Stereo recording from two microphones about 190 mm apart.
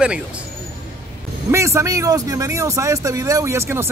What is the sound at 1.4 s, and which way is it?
Speech, 15° right (ahead or behind).